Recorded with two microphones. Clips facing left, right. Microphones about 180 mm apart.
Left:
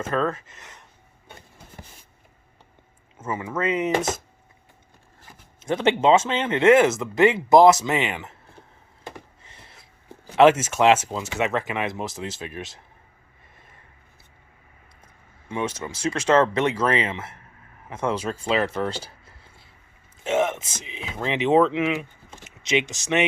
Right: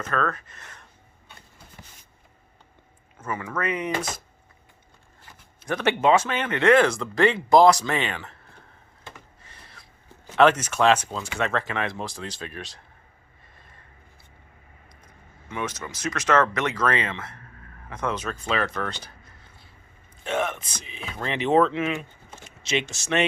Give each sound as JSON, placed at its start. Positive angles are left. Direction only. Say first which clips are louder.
{"t": 0.0, "sound": "speech", "louder": "left 3 dB", "side_deg": 25}
{"t": 3.2, "sound": "speech", "louder": "left 2 dB", "side_deg": 25}
{"t": 5.6, "sound": "speech", "louder": "left 2 dB", "side_deg": 25}
{"t": 9.4, "sound": "a sound", "louder": "even", "side_deg": 20}
{"t": 10.3, "sound": "speech", "louder": "left 3 dB", "side_deg": 20}
{"t": 15.4, "sound": "speech", "louder": "left 4 dB", "side_deg": 30}
{"t": 18.7, "sound": "a sound", "louder": "left 4 dB", "side_deg": 25}
{"t": 20.8, "sound": "speech", "louder": "left 3 dB", "side_deg": 20}